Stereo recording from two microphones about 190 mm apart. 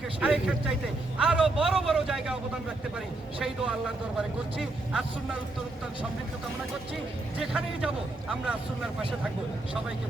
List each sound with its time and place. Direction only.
0.2 s a man's voice: 5° right (ahead or behind)
7.3 s a man's voice: 5° right (ahead or behind)